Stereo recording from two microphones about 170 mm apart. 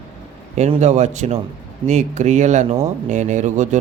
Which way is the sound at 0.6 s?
45° right (ahead or behind).